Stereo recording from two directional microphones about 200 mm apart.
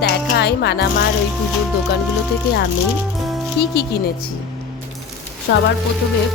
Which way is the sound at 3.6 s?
55° left (ahead or behind).